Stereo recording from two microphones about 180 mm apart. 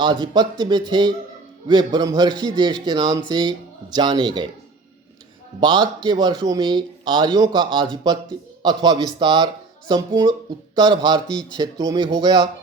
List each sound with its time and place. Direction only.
0.0 s speech: 25° right (ahead or behind)
5.5 s speech: 25° right (ahead or behind)